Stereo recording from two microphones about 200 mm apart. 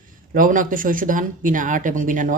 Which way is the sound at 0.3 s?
40° right (ahead or behind).